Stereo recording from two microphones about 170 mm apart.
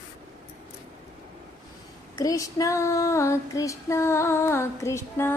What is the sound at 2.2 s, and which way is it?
Female singing, 20° left (ahead or behind).